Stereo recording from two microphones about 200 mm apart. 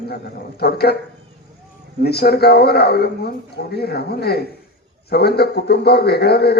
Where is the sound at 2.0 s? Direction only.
55° left (ahead or behind).